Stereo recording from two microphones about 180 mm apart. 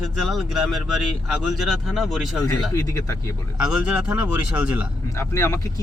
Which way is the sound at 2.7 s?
20° left (ahead or behind).